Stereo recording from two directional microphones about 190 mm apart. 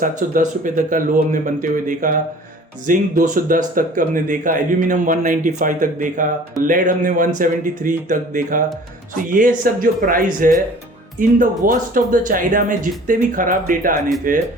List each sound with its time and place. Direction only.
0.0 s speech: 45° right (ahead or behind)